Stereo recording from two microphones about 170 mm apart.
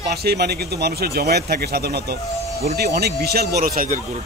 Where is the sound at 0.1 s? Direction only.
70° right (ahead or behind).